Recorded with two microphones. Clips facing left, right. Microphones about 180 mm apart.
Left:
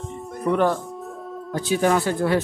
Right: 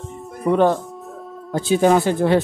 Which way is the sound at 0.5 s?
20° right (ahead or behind).